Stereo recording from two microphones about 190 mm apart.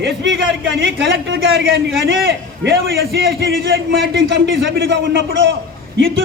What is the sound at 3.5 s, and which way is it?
A man's voice, 85° right.